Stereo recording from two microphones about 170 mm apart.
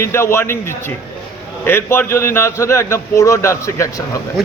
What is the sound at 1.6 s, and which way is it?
A man's voice, 10° left (ahead or behind).